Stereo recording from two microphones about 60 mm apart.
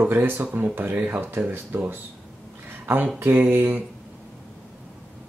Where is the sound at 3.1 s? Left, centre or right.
Right.